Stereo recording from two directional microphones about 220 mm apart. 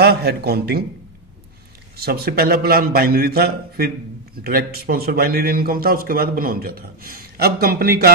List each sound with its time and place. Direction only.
0.0 s a man's voice: 45° right (ahead or behind)
2.0 s a man's voice: 45° right (ahead or behind)